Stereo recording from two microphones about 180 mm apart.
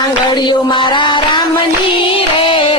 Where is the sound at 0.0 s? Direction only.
25° left (ahead or behind).